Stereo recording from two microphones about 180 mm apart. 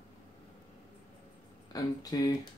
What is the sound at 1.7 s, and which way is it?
Speech, 20° left (ahead or behind).